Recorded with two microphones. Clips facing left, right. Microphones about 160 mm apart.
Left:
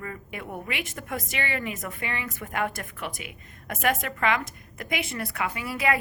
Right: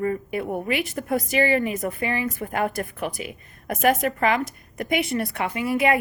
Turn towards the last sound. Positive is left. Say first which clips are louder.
# right 6 dB
turn(degrees=-25)  # may be behind; listen again after turning